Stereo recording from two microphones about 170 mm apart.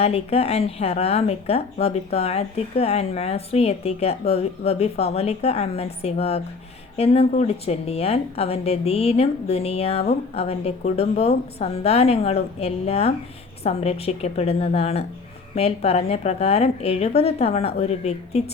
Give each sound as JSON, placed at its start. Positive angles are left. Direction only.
{"t": 0.0, "sound": "speech", "side_deg": 35}